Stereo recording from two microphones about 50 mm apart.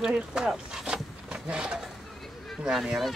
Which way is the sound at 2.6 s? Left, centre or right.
Centre.